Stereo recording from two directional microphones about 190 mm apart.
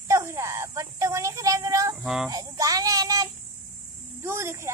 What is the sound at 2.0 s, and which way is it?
Speech, centre (ahead or behind).